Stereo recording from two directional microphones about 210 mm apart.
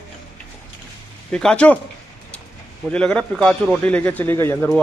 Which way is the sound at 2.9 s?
5° left (ahead or behind).